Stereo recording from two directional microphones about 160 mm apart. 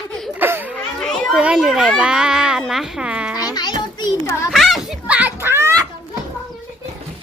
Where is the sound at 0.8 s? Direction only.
Centre (ahead or behind).